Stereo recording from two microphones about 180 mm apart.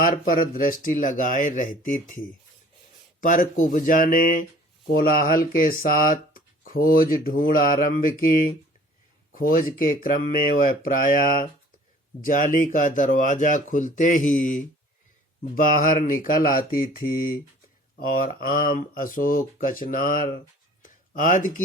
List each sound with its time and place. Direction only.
0.0 s speech: 50° left (ahead or behind)
3.2 s speech: 45° left (ahead or behind)
9.3 s speech: 50° left (ahead or behind)
20.8 s a sound: 45° left (ahead or behind)